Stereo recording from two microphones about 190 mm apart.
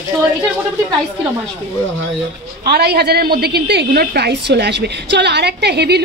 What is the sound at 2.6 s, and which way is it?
A woman's voice, 55° right (ahead or behind).